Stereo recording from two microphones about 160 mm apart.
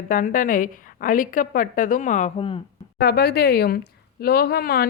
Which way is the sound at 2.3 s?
35° left (ahead or behind).